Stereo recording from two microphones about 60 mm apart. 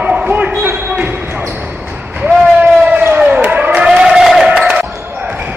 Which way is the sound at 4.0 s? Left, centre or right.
Centre.